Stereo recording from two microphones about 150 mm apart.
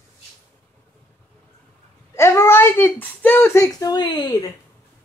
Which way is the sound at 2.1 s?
15° left (ahead or behind).